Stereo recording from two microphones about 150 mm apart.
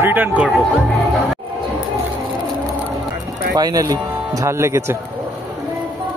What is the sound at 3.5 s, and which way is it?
Speech, 25° right (ahead or behind).